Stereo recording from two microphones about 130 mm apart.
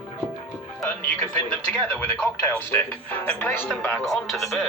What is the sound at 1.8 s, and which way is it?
Speech, 5° left (ahead or behind).